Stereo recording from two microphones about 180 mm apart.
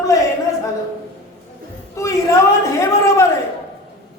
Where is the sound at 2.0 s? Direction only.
15° left (ahead or behind).